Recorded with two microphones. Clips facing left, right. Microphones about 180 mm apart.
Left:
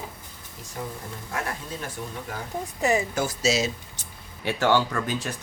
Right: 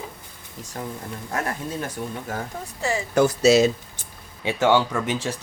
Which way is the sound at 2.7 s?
20° left (ahead or behind).